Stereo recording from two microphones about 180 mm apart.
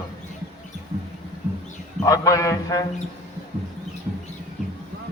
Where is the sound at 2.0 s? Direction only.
20° left (ahead or behind).